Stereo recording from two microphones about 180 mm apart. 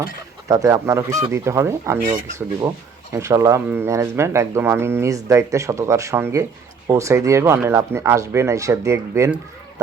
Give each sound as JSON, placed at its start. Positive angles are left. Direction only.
{"t": 0.4, "sound": "speech", "side_deg": -15}
{"t": 2.0, "sound": "speech", "side_deg": -45}
{"t": 2.6, "sound": "speech", "side_deg": -20}